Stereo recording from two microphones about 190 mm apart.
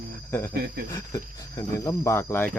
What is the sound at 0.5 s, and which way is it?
Cricket, 60° right (ahead or behind).